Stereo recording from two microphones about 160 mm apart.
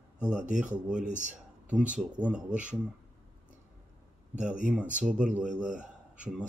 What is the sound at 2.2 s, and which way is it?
Speech, 10° right (ahead or behind).